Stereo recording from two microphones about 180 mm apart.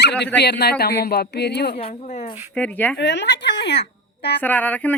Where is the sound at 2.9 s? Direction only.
75° left (ahead or behind).